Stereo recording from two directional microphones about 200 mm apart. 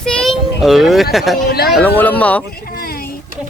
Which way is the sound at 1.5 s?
50° left (ahead or behind).